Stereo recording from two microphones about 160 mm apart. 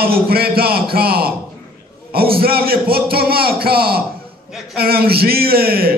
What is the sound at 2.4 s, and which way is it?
A man's voice, 70° right (ahead or behind).